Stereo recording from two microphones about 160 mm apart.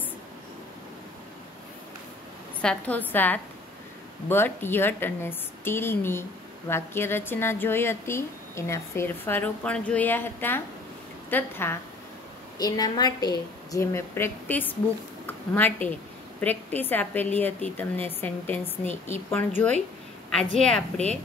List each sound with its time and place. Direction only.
2.6 s speech: 10° left (ahead or behind)
12.5 s a woman's voice: 25° left (ahead or behind); by 20.8 s 5° left (ahead or behind)